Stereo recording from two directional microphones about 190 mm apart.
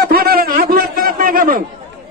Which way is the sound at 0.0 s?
55° right (ahead or behind).